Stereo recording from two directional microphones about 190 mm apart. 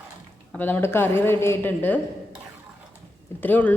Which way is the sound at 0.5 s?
10° left (ahead or behind).